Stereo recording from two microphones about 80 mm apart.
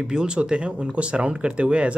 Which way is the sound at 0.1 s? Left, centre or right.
Centre.